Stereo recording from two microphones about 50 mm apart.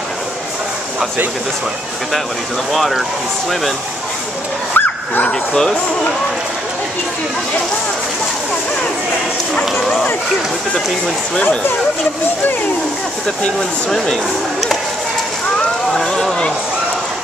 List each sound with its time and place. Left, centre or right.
2.7 s speech: centre
4.7 s dog: left
5.3 s speech: centre
13.4 s speech: centre
16.0 s a sound: centre